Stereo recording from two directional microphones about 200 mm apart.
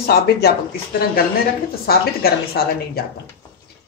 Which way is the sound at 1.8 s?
50° left (ahead or behind).